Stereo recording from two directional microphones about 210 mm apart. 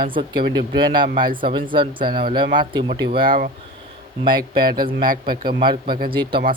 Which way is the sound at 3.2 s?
40° right (ahead or behind).